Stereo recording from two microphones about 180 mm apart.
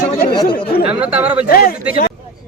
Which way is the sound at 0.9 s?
10° right (ahead or behind).